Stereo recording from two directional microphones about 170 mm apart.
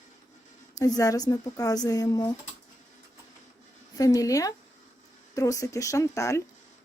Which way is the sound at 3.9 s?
20° left (ahead or behind).